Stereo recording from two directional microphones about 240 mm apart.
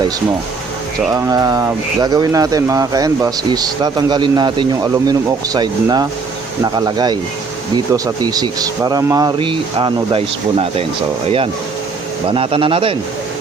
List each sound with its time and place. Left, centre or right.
1.1 s speech: centre
8.3 s speech: centre
12.3 s a man's voice: right